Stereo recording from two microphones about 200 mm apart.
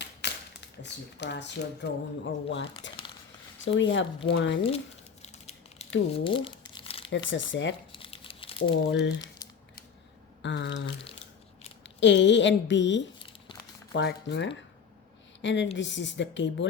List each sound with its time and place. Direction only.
0.0 s a sound: 60° left (ahead or behind)
0.8 s speech: 60° left (ahead or behind)
5.2 s a sound: 35° left (ahead or behind)
6.1 s crumpling: 25° left (ahead or behind)
7.1 s speech: 65° left (ahead or behind)
7.9 s crumpling: 25° left (ahead or behind)
8.7 s speech: 65° left (ahead or behind)
10.4 s speech: 65° left (ahead or behind)